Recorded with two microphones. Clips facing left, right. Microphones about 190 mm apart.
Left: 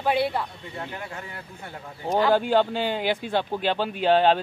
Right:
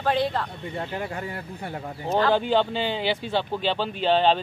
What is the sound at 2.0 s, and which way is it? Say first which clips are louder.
A woman's voice: left 1 dB; 10° left (ahead or behind).